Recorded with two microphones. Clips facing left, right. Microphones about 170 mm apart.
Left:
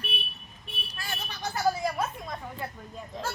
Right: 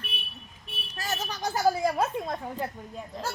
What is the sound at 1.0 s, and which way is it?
Speech, 40° right (ahead or behind).